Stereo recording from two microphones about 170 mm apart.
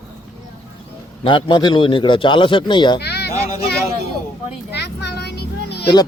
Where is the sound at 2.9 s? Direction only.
75° left (ahead or behind).